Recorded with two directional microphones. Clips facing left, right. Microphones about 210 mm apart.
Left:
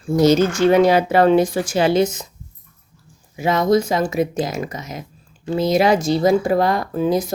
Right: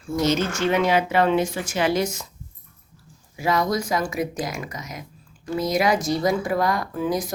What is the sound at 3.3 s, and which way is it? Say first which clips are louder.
A woman's voice: left 6 dB; 25° left (ahead or behind).